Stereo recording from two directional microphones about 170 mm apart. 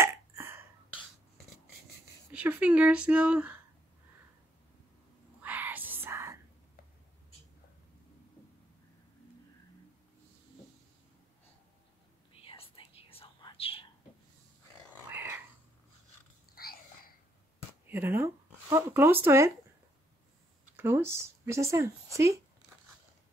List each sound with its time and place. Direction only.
0.0 s burping: 15° right (ahead or behind)
2.3 s speech: 10° right (ahead or behind)
5.4 s whispering: 10° right (ahead or behind)
12.4 s whispering: 30° left (ahead or behind)
15.0 s dog: 10° right (ahead or behind)
16.5 s whispering: 60° left (ahead or behind)
17.8 s a sound: 10° right (ahead or behind)
20.7 s speech: 15° right (ahead or behind)